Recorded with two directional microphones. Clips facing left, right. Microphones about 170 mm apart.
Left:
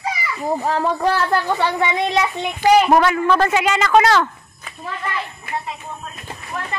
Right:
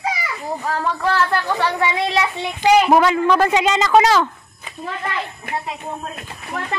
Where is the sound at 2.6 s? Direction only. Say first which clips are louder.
Even; 10° right (ahead or behind).